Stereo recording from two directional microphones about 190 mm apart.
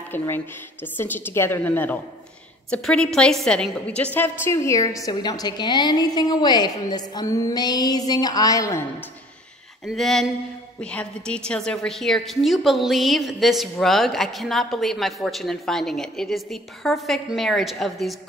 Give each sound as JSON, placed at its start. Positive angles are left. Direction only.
{"t": 0.1, "sound": "a woman's voice", "side_deg": 10}
{"t": 9.8, "sound": "a woman's voice", "side_deg": 0}